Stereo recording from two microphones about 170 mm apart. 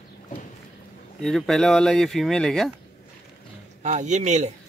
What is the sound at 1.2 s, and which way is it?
Speech, centre (ahead or behind).